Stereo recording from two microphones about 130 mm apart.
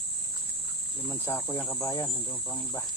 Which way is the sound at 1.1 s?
15° left (ahead or behind).